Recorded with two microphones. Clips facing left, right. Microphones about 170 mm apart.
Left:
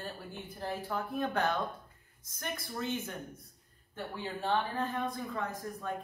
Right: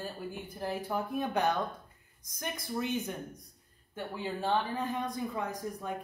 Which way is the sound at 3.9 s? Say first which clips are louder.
Right 3 dB; 5° right (ahead or behind).